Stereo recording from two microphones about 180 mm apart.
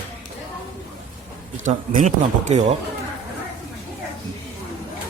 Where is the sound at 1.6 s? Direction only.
45° right (ahead or behind).